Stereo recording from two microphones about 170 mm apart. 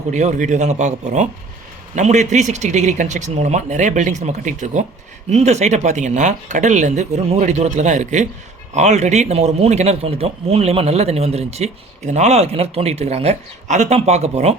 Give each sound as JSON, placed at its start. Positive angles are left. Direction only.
{"t": 0.1, "sound": "a man's voice", "side_deg": -45}